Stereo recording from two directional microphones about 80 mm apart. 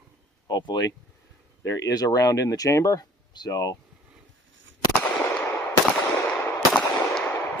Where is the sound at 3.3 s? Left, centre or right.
Left.